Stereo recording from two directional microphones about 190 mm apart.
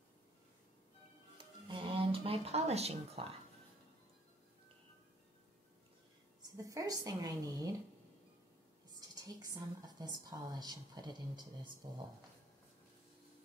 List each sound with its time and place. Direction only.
1.4 s music: 25° right (ahead or behind)
6.4 s a woman's voice: 15° right (ahead or behind)
9.1 s a woman's voice: 20° right (ahead or behind)